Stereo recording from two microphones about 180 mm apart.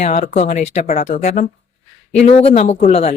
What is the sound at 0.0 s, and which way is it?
Speech, 40° left (ahead or behind).